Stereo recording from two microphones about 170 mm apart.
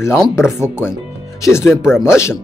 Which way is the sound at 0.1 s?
5° right (ahead or behind).